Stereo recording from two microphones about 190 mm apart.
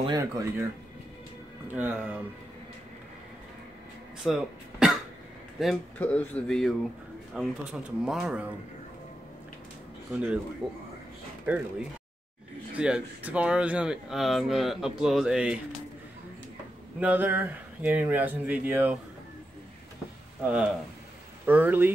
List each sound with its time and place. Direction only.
0.0 s speech: 20° right (ahead or behind)
1.7 s speech: 10° right (ahead or behind)
4.2 s speech: 5° right (ahead or behind)
10.1 s speech: 5° right (ahead or behind)
12.7 s speech: 5° right (ahead or behind)
17.0 s speech: 10° right (ahead or behind)
21.5 s speech: 10° right (ahead or behind)